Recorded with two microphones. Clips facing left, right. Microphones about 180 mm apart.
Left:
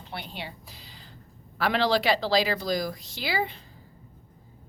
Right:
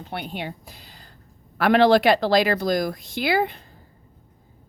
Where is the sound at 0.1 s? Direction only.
55° right (ahead or behind).